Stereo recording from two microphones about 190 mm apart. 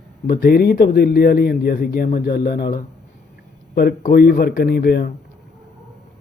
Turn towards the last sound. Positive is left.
turn(degrees=60)  # may be behind; listen again after turning